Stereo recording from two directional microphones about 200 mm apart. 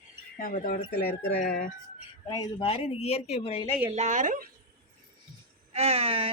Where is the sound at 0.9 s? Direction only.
50° left (ahead or behind).